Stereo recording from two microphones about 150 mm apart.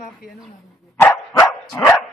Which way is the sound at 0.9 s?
15° left (ahead or behind).